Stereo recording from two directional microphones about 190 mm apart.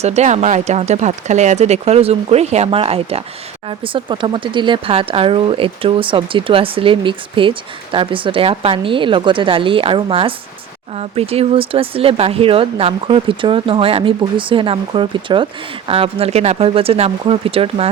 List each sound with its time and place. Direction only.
0.0 s speech: 35° right (ahead or behind)